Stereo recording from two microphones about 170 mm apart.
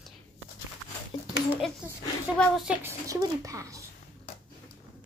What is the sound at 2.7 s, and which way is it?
A woman's voice, 15° right (ahead or behind).